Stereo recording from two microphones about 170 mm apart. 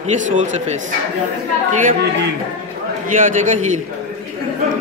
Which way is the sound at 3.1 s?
50° right (ahead or behind).